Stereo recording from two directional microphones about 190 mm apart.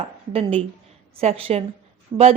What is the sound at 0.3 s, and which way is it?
A woman's voice, 30° right (ahead or behind).